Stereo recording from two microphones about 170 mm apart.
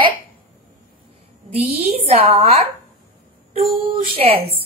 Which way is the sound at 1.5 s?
40° right (ahead or behind).